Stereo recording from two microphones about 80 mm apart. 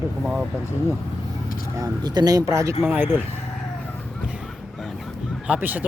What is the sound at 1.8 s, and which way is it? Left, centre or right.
Speech, right.